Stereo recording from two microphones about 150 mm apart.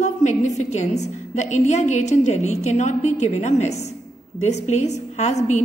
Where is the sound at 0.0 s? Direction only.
55° left (ahead or behind).